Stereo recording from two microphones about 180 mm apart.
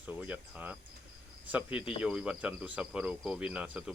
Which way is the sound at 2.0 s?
5° right (ahead or behind).